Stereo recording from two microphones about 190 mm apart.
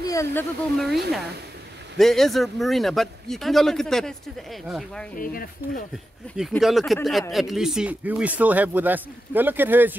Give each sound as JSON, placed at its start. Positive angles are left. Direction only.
{"t": 0.0, "sound": "speech", "side_deg": 15}
{"t": 2.0, "sound": "speech", "side_deg": 0}
{"t": 5.1, "sound": "speech", "side_deg": 50}
{"t": 6.2, "sound": "speech", "side_deg": 5}